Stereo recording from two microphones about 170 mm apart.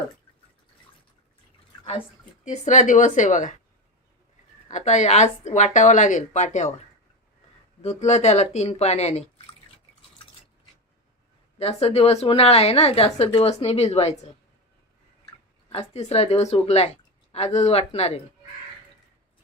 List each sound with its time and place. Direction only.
2.4 s a woman's voice: 45° left (ahead or behind)
4.7 s a woman's voice: 45° left (ahead or behind)
7.8 s a woman's voice: 40° left (ahead or behind)
11.6 s a woman's voice: 35° left (ahead or behind)
15.7 s a woman's voice: 40° left (ahead or behind)